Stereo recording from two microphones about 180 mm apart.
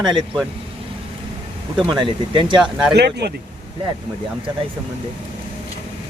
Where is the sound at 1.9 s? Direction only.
25° right (ahead or behind).